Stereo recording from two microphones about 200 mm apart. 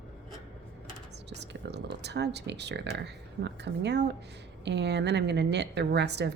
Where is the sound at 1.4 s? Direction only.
60° right (ahead or behind).